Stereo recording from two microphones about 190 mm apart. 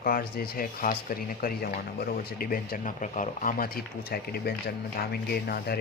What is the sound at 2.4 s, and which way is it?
Speech, 50° left (ahead or behind).